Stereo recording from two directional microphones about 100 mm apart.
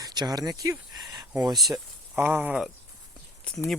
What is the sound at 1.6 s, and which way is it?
Speech, centre (ahead or behind).